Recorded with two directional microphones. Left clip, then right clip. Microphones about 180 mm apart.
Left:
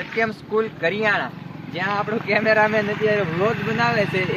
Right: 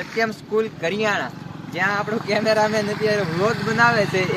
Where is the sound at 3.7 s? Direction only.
35° right (ahead or behind).